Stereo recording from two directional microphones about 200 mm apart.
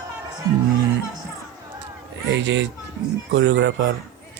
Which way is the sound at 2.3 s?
65° right (ahead or behind).